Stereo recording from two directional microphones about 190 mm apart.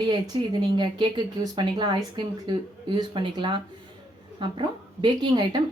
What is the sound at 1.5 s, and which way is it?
A woman's voice, 25° right (ahead or behind).